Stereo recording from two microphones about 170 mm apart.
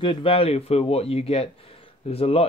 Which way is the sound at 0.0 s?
30° left (ahead or behind).